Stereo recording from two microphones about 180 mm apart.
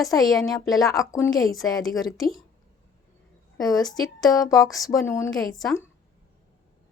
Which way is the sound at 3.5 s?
20° left (ahead or behind).